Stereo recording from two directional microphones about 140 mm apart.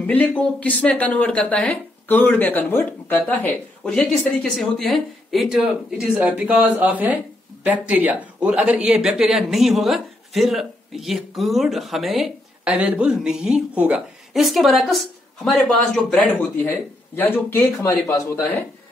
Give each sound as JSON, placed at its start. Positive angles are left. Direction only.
{"t": 0.0, "sound": "speech", "side_deg": 10}